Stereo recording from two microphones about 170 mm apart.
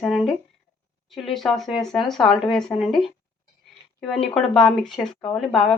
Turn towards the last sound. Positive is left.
turn(degrees=0)  # may be behind; listen again after turning